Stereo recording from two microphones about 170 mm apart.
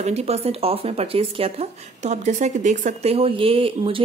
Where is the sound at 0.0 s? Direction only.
40° right (ahead or behind).